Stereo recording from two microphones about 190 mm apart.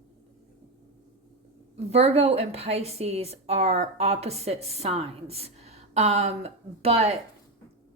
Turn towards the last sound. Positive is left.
turn(degrees=-30)  # may be behind; listen again after turning